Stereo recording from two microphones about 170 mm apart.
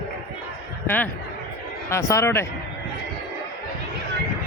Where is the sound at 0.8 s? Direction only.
10° left (ahead or behind).